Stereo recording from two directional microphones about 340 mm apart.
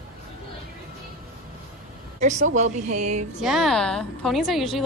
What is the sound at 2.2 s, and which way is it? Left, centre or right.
Speech, right.